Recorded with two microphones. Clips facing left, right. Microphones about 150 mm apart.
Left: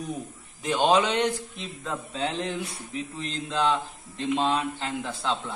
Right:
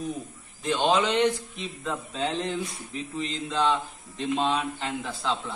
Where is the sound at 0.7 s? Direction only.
5° left (ahead or behind).